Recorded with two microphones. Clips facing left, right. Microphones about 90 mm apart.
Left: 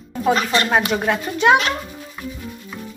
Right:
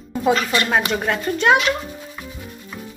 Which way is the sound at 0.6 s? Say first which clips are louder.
Left 2 dB; 5° left (ahead or behind).